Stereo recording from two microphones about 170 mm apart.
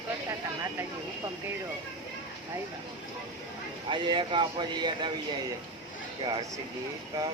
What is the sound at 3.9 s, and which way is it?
Speech, 30° right (ahead or behind).